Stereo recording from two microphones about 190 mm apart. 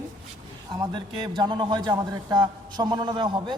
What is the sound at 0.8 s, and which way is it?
A man's voice, 25° right (ahead or behind).